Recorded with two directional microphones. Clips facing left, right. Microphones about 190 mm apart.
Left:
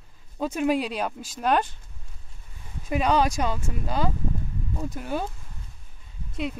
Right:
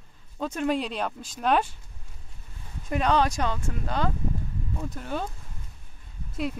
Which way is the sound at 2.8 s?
5° left (ahead or behind).